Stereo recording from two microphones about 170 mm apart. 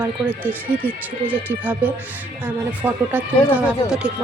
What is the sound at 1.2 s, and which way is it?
Speech, 10° right (ahead or behind).